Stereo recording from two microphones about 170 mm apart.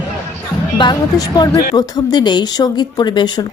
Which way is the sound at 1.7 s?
25° left (ahead or behind).